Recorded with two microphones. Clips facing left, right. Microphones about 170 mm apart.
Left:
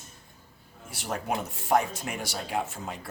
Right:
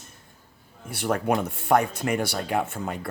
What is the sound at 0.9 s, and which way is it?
Speech, 60° right (ahead or behind).